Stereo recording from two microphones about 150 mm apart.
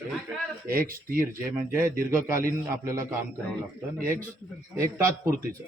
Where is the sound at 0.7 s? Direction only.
70° right (ahead or behind).